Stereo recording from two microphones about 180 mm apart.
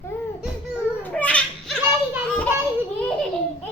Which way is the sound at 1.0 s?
5° left (ahead or behind).